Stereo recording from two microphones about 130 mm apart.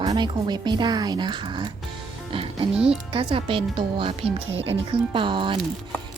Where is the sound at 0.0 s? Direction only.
35° right (ahead or behind).